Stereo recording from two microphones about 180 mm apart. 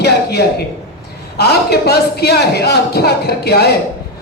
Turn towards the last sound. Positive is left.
turn(degrees=60)  # may be behind; listen again after turning